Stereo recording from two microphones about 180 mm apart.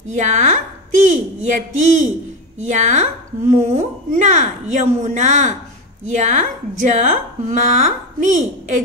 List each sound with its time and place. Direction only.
0.1 s a woman's voice: 40° right (ahead or behind)